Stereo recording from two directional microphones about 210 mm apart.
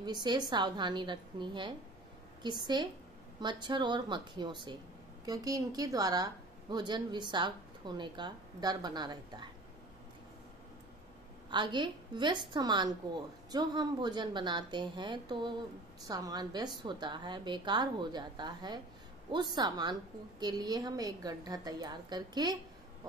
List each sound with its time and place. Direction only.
0.0 s a woman's voice: 20° right (ahead or behind)
11.5 s a woman's voice: 20° right (ahead or behind)